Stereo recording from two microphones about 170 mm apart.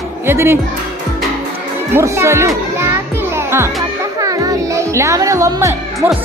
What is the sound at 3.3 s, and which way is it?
Music, 15° right (ahead or behind).